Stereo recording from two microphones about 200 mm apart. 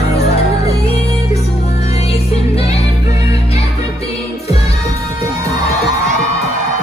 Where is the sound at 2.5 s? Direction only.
30° left (ahead or behind).